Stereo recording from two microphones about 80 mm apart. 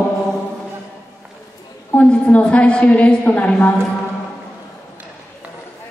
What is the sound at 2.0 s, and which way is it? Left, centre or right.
A woman's voice, centre.